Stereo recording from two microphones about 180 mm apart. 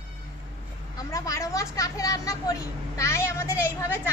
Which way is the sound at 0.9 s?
20° left (ahead or behind).